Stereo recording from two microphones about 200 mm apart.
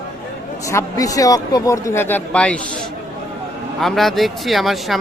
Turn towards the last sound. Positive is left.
turn(degrees=0)  # may be behind; listen again after turning